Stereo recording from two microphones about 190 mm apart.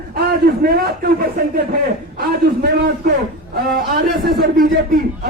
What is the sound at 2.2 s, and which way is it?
Speech, 50° right (ahead or behind).